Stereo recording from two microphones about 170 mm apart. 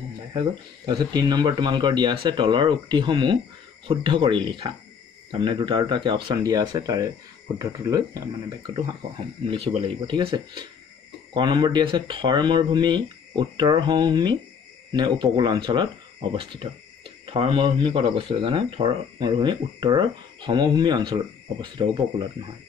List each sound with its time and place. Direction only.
0.8 s speech: 25° right (ahead or behind)